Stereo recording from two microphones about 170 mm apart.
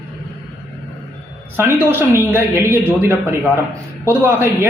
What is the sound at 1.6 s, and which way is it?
Speech, 15° right (ahead or behind).